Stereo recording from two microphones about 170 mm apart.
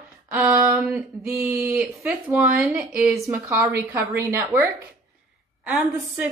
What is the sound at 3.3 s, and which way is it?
Speech, 15° right (ahead or behind).